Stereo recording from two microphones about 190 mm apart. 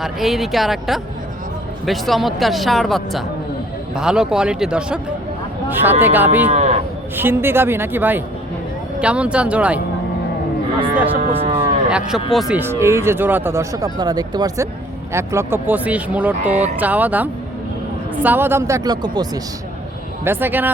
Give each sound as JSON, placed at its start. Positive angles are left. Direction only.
{"t": 0.0, "sound": "speech", "side_deg": 0}
{"t": 6.5, "sound": "speech", "side_deg": -40}
{"t": 7.2, "sound": "speech", "side_deg": -10}
{"t": 11.2, "sound": "speech", "side_deg": -35}
{"t": 11.9, "sound": "speech", "side_deg": -5}
{"t": 16.5, "sound": "speech", "side_deg": -35}
{"t": 16.8, "sound": "speech", "side_deg": -10}